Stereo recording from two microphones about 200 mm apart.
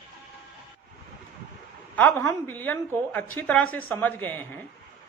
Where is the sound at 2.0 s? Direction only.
10° left (ahead or behind).